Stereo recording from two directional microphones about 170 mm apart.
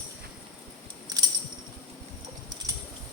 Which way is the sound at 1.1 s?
20° right (ahead or behind).